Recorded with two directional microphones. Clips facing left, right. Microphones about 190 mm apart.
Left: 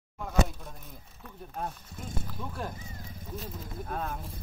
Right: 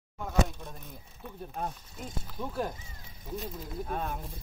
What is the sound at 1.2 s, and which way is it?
Speech, 10° right (ahead or behind).